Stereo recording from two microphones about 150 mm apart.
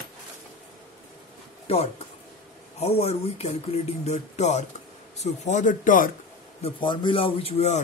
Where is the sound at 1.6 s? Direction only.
45° left (ahead or behind); by 6.1 s 65° left (ahead or behind).